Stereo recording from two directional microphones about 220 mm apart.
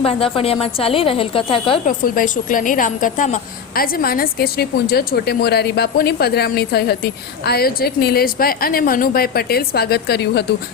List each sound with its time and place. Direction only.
0.0 s a woman's voice: 25° left (ahead or behind)
1.9 s a woman's voice: 35° left (ahead or behind)